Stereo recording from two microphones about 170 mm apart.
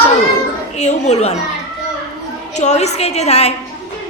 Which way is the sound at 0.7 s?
40° left (ahead or behind).